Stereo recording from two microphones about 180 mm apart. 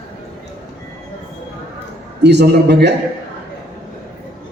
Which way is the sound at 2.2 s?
70° right (ahead or behind).